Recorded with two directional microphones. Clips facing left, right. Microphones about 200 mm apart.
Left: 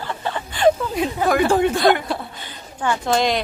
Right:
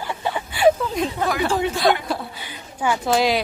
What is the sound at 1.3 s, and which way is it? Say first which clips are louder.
Speech: left 8 dB; 50° left (ahead or behind).